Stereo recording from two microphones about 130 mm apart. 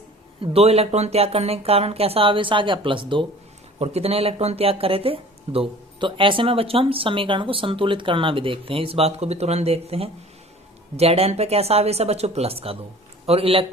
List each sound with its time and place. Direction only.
0.4 s speech: 50° right (ahead or behind)
3.8 s speech: 55° right (ahead or behind)